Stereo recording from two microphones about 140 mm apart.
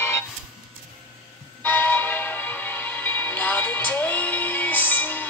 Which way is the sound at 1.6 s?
10° left (ahead or behind).